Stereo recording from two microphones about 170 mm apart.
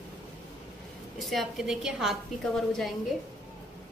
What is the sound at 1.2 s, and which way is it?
A woman's voice, centre (ahead or behind).